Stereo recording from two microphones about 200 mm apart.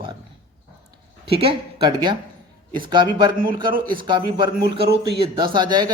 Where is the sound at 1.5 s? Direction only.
25° right (ahead or behind).